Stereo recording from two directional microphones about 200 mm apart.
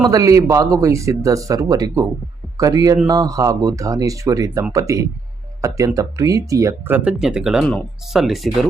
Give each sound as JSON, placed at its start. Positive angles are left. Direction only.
{"t": 0.1, "sound": "speech", "side_deg": -15}